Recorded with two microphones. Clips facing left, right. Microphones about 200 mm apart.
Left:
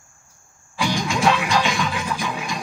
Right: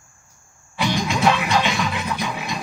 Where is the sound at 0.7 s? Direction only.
25° right (ahead or behind).